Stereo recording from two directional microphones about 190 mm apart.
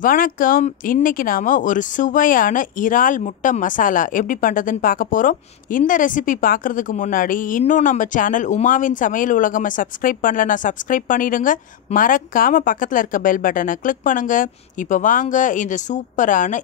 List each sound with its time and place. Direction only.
0.0 s speech: 45° left (ahead or behind)